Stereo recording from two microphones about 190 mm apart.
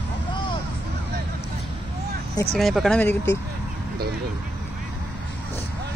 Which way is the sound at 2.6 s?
Centre (ahead or behind).